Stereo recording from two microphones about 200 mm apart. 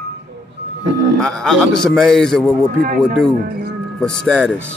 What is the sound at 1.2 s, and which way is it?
A man's voice, 5° left (ahead or behind).